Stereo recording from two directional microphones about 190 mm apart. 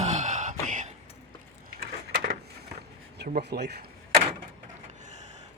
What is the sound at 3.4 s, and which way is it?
Speech, 60° right (ahead or behind).